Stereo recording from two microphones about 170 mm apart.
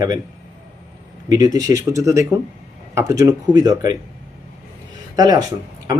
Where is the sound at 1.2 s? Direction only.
20° right (ahead or behind).